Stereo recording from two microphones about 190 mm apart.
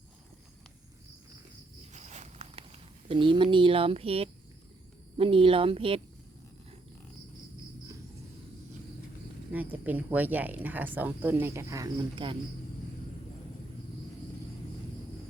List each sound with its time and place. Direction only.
1.9 s walk: 40° right (ahead or behind)
3.1 s speech: 25° right (ahead or behind)
9.5 s speech: 10° right (ahead or behind); by 12.4 s 25° right (ahead or behind)